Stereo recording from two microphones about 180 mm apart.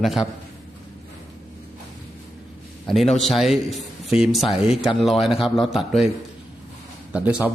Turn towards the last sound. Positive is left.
turn(degrees=-5)  # may be behind; listen again after turning